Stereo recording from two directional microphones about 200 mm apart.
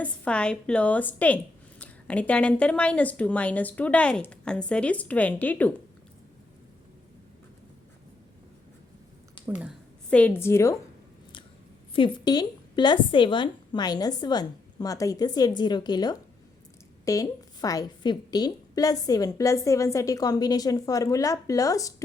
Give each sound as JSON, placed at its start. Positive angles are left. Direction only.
{"t": 0.0, "sound": "a woman's voice", "side_deg": 5}
{"t": 10.1, "sound": "a woman's voice", "side_deg": 5}
{"t": 11.9, "sound": "a woman's voice", "side_deg": 20}